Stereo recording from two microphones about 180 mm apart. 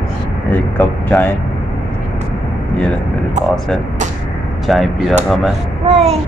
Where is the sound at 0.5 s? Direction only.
10° left (ahead or behind).